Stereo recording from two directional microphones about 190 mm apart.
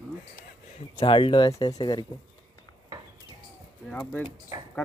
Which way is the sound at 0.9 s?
25° left (ahead or behind).